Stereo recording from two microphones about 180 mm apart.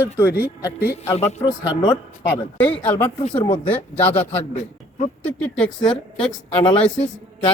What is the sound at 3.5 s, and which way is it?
Speech, 10° left (ahead or behind).